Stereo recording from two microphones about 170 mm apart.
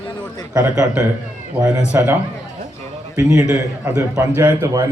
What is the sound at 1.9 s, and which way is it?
Speech, 10° right (ahead or behind).